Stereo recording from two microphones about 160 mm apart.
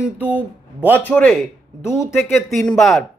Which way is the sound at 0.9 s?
10° left (ahead or behind).